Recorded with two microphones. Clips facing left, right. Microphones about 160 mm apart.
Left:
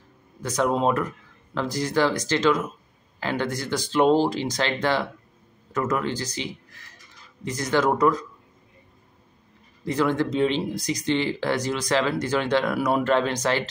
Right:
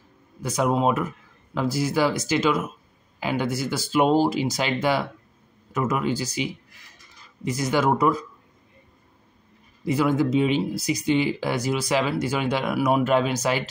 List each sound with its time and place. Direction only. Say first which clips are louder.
0.4 s speech: even; 10° right (ahead or behind)
9.8 s speech: right 2 dB; 10° right (ahead or behind)